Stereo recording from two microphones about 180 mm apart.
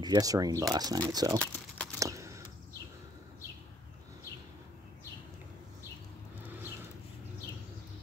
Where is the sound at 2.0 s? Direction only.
15° right (ahead or behind).